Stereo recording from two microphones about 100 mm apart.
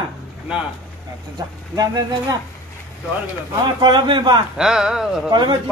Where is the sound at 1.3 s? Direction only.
40° right (ahead or behind).